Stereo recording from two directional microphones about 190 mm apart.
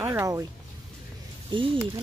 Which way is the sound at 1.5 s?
25° right (ahead or behind).